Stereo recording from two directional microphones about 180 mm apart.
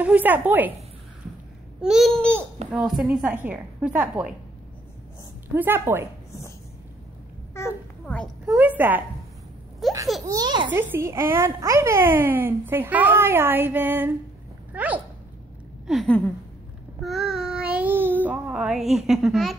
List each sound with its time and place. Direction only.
0.0 s speech: 10° right (ahead or behind)
1.8 s babbling: centre (ahead or behind)
2.7 s speech: 5° right (ahead or behind)
5.5 s speech: 10° right (ahead or behind)
7.5 s a child's voice: 10° left (ahead or behind)
8.5 s speech: 10° right (ahead or behind)
9.8 s a sound: centre (ahead or behind)
10.2 s a child's voice: 20° right (ahead or behind)
10.7 s speech: 10° right (ahead or behind)
15.9 s babbling: 5° left (ahead or behind)
17.0 s child singing: centre (ahead or behind)